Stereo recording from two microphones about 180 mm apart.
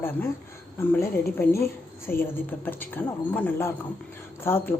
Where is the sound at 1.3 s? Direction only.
10° left (ahead or behind).